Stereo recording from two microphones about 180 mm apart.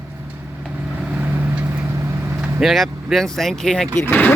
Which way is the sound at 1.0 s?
5° right (ahead or behind).